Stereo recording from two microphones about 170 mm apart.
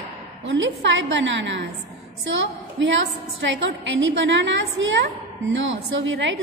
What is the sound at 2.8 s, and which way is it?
Speech, 90° right.